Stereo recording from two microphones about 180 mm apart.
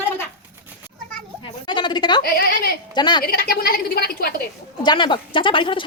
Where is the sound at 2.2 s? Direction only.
60° left (ahead or behind).